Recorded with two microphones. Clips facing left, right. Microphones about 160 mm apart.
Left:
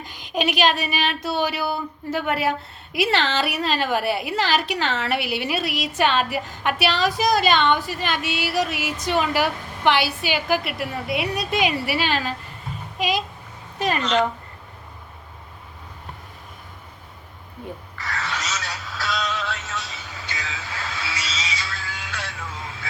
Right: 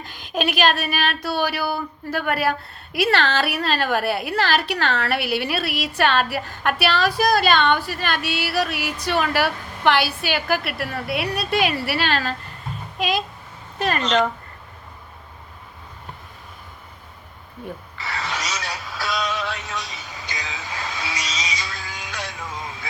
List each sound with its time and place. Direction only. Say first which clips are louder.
0.0 s speech: even; 15° left (ahead or behind)
14.0 s speech: right 1 dB; 20° right (ahead or behind)
18.1 s synthetic singing: right 1 dB; 15° right (ahead or behind)